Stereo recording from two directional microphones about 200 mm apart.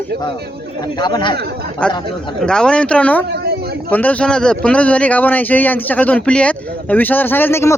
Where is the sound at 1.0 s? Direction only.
20° left (ahead or behind).